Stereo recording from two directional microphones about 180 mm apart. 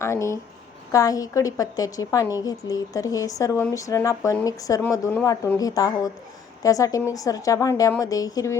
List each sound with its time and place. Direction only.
0.0 s a woman's voice: 15° left (ahead or behind)